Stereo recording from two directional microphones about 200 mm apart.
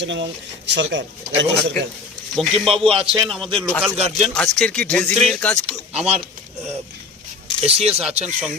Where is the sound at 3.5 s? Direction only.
25° right (ahead or behind).